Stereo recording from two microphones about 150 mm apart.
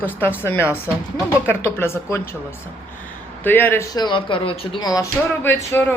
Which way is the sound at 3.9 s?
30° left (ahead or behind).